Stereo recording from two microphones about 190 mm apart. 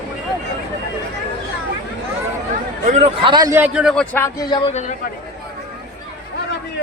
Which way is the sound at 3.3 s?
15° right (ahead or behind).